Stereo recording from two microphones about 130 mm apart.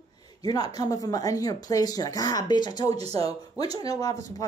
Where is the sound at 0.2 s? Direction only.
30° left (ahead or behind).